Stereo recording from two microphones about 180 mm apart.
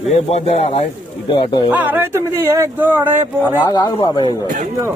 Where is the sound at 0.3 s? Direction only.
35° left (ahead or behind).